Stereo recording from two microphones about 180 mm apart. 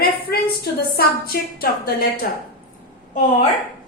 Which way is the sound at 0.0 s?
60° left (ahead or behind).